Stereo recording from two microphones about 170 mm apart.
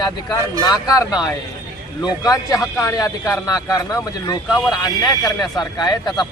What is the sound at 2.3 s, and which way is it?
A man's voice, 20° left (ahead or behind).